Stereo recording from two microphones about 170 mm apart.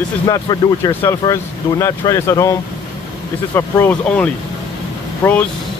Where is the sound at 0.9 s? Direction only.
15° left (ahead or behind).